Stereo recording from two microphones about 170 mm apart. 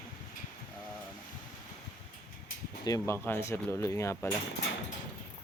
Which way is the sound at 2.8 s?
20° left (ahead or behind).